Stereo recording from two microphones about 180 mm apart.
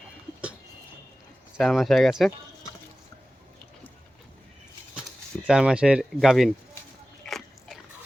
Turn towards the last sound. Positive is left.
turn(degrees=0)  # may be behind; listen again after turning